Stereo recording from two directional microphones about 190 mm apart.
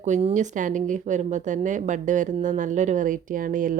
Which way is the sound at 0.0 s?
35° right (ahead or behind).